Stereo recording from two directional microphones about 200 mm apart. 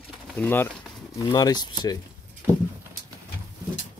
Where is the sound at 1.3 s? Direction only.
20° left (ahead or behind).